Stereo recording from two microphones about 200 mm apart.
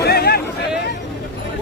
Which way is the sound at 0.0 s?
50° left (ahead or behind).